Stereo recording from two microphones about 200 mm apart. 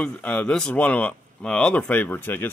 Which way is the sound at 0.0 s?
5° left (ahead or behind).